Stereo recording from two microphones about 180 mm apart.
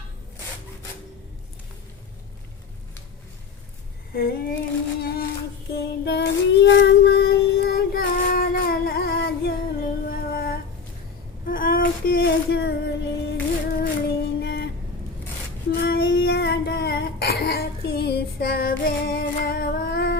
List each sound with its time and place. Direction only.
4.1 s a sound: 55° left (ahead or behind)
5.7 s child singing: 70° left (ahead or behind)
13.7 s music: 60° left (ahead or behind)
15.7 s child singing: 65° left (ahead or behind)